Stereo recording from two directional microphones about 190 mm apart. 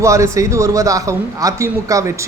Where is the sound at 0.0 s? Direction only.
15° right (ahead or behind).